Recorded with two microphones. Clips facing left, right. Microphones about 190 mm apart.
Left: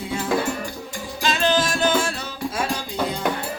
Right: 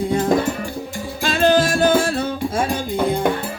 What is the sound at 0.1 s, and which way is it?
Music, 45° right (ahead or behind).